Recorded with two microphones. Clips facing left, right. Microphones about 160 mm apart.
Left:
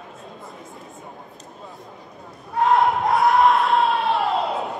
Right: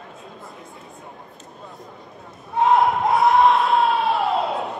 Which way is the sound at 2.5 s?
Centre (ahead or behind).